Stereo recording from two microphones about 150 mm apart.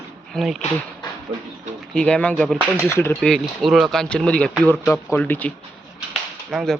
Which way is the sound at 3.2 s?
Centre (ahead or behind).